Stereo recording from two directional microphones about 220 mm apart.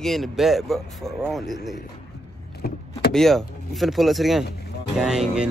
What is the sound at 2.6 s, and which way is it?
Power windows, 45° left (ahead or behind).